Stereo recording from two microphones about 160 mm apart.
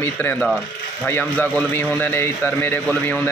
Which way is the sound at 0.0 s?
10° left (ahead or behind).